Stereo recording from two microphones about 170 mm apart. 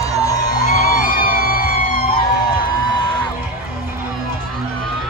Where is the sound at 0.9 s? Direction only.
55° left (ahead or behind).